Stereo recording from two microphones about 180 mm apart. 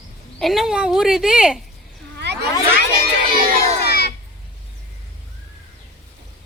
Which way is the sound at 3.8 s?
65° left (ahead or behind).